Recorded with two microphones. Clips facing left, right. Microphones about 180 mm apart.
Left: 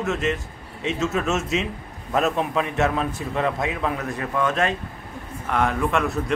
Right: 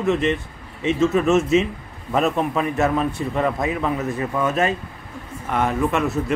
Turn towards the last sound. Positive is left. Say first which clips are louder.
# right 2 dB
turn(degrees=0)  # may be behind; listen again after turning